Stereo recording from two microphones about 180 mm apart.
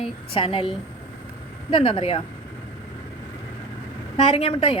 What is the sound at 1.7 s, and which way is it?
Speech, 30° left (ahead or behind).